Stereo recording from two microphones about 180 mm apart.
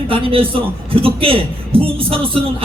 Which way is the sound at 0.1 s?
30° right (ahead or behind).